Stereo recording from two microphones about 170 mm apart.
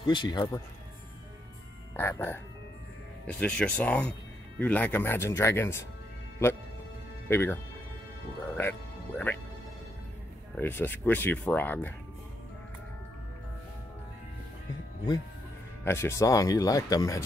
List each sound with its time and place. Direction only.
0.0 s speech: 25° left (ahead or behind)
2.0 s speech: 15° left (ahead or behind)
7.2 s speech: 15° left (ahead or behind)
8.5 s speech: 10° left (ahead or behind)
10.5 s speech: 10° left (ahead or behind)
15.8 s speech: 15° left (ahead or behind)